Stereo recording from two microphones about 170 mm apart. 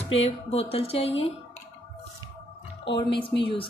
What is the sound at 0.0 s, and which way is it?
Speech, 35° left (ahead or behind).